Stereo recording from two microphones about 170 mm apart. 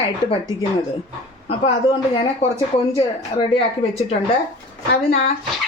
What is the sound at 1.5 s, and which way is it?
Speech, 35° left (ahead or behind).